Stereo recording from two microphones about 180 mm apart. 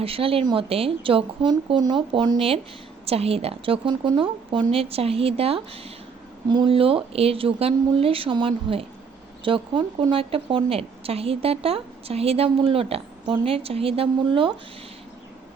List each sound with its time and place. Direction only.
0.0 s a woman's voice: 30° right (ahead or behind)